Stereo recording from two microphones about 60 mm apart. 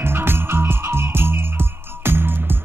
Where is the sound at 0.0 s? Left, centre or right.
Right.